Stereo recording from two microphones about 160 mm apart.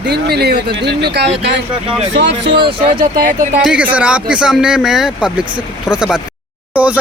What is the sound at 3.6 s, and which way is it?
Speech, 5° right (ahead or behind).